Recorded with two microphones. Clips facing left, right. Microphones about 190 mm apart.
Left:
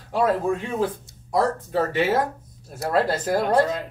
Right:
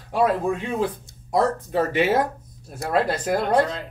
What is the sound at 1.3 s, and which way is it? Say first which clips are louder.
Speech: right 1 dB; 20° right (ahead or behind).